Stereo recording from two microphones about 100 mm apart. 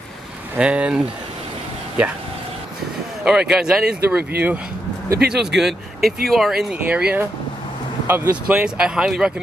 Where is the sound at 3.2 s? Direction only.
5° right (ahead or behind).